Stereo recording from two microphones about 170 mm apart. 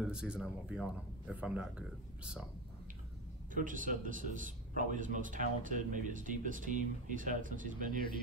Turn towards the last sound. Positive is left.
turn(degrees=-50)  # may be behind; listen again after turning